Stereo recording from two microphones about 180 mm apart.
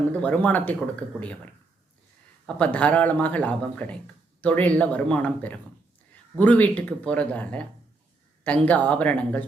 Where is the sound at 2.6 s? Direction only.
5° left (ahead or behind).